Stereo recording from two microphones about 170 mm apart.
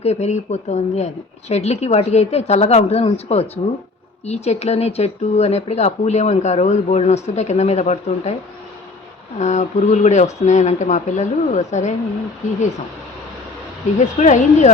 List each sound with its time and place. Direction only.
0.0 s speech: 40° left (ahead or behind)
9.4 s speech: 40° left (ahead or behind)
14.0 s speech: 45° left (ahead or behind)